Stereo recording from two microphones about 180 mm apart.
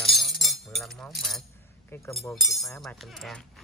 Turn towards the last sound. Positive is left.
turn(degrees=0)  # may be behind; listen again after turning